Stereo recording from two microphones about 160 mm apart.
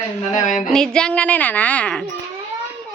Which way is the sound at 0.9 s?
5° left (ahead or behind).